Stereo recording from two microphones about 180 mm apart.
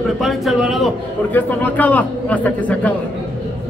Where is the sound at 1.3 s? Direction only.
10° left (ahead or behind).